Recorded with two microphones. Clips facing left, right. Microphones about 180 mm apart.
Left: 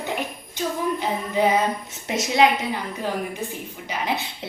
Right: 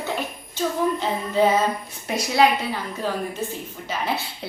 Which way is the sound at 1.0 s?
15° left (ahead or behind).